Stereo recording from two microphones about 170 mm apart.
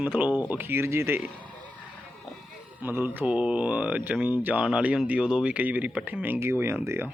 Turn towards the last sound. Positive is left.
turn(degrees=-15)  # may be behind; listen again after turning